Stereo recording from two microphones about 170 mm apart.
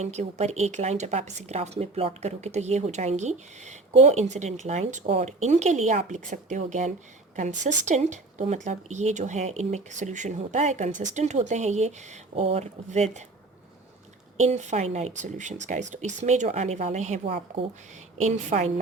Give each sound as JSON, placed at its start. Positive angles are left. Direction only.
{"t": 0.0, "sound": "a woman's voice", "side_deg": -40}
{"t": 14.3, "sound": "a woman's voice", "side_deg": -40}